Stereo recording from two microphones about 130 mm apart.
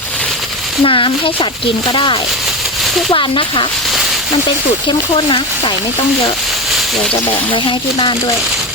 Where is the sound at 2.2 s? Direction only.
Centre (ahead or behind).